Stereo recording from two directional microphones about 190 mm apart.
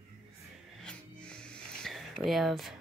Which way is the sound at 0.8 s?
5° left (ahead or behind).